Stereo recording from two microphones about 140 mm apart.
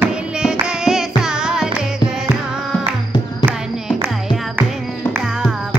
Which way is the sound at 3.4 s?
10° right (ahead or behind).